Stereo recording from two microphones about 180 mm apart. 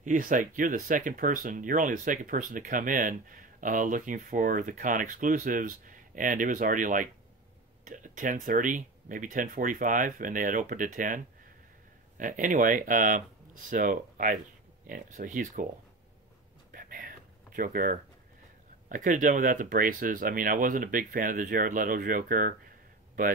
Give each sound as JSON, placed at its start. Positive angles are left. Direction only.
{"t": 0.0, "sound": "speech", "side_deg": -45}
{"t": 16.7, "sound": "a sound", "side_deg": -50}
{"t": 18.9, "sound": "speech", "side_deg": -45}